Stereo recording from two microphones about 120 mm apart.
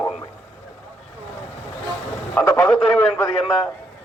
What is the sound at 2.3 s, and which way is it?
Speech, 15° left (ahead or behind).